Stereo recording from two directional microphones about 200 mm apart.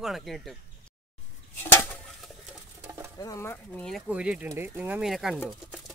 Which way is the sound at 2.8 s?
15° right (ahead or behind).